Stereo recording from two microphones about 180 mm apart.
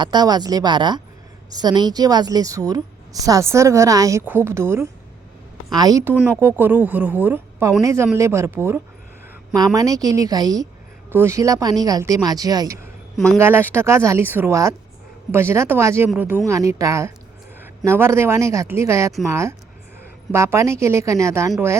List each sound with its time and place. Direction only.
0.0 s a woman's voice: 25° right (ahead or behind)
13.1 s speech: 5° left (ahead or behind)
13.4 s speech: 15° right (ahead or behind)